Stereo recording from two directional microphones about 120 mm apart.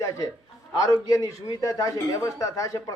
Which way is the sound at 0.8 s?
30° left (ahead or behind).